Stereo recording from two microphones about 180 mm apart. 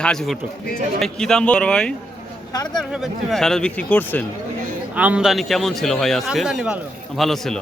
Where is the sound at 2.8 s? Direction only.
Centre (ahead or behind).